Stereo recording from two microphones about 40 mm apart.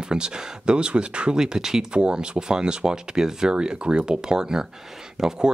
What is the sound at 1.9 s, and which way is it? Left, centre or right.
Speech, right.